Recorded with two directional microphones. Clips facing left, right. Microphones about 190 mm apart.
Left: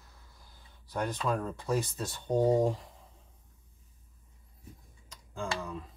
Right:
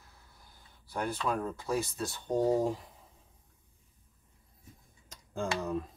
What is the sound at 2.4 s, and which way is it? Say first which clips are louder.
Speech: left 2 dB; 25° left (ahead or behind).